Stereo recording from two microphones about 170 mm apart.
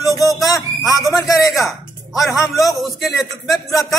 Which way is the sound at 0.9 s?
20° left (ahead or behind).